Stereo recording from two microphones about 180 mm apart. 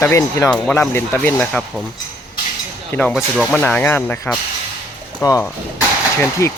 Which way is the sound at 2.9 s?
10° left (ahead or behind).